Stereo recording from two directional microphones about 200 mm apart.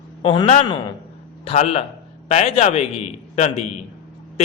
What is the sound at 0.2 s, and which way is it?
A man's voice, 25° left (ahead or behind).